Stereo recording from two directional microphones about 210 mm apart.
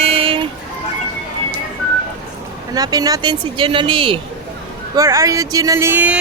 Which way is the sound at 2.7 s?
15° right (ahead or behind).